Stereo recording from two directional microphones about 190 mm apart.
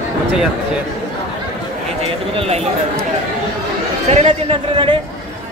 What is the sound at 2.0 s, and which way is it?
Speech, 30° right (ahead or behind).